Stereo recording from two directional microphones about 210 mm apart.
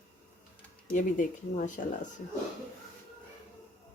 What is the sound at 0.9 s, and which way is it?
Speech, 40° left (ahead or behind).